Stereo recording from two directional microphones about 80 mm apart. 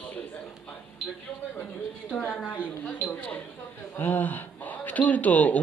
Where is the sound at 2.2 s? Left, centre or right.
Left.